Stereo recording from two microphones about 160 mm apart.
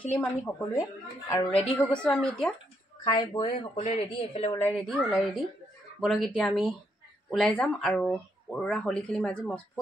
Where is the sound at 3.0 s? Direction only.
30° left (ahead or behind).